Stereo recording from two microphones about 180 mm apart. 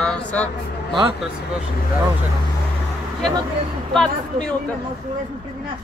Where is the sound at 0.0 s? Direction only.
5° left (ahead or behind).